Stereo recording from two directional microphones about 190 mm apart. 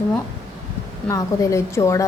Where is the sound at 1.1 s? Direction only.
15° left (ahead or behind).